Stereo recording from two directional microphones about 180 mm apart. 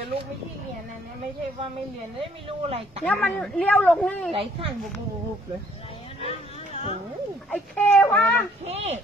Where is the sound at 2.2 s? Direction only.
35° right (ahead or behind).